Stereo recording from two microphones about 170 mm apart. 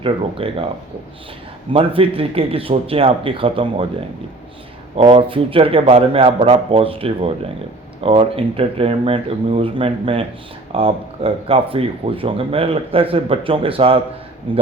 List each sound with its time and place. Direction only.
0.0 s speech: 30° right (ahead or behind)
1.7 s speech: 35° right (ahead or behind)
4.9 s speech: 30° right (ahead or behind)